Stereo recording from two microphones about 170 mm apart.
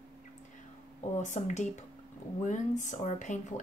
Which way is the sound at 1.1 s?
45° left (ahead or behind).